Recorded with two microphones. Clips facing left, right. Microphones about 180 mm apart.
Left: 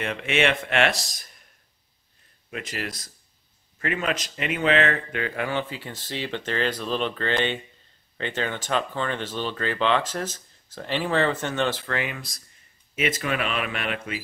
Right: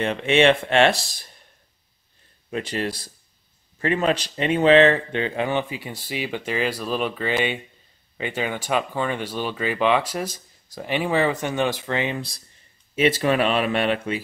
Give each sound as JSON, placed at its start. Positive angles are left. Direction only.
{"t": 0.0, "sound": "speech", "side_deg": -30}
{"t": 2.5, "sound": "speech", "side_deg": -30}